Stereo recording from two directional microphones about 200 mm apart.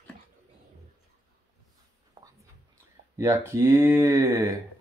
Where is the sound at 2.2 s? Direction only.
20° right (ahead or behind).